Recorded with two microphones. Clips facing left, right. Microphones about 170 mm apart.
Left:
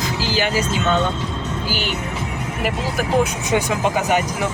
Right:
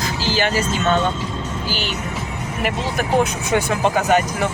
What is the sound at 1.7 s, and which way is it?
Speech, 15° left (ahead or behind).